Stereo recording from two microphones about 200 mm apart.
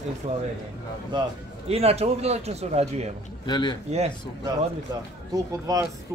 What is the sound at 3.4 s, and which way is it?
Speech, 20° left (ahead or behind).